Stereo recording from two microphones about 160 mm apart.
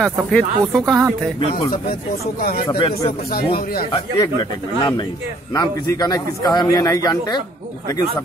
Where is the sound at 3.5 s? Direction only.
65° left (ahead or behind).